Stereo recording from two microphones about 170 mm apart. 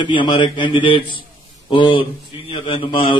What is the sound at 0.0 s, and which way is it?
A man's voice, 30° left (ahead or behind).